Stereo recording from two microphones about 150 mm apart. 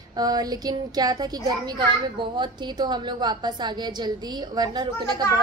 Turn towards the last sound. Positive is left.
turn(degrees=-30)  # may be behind; listen again after turning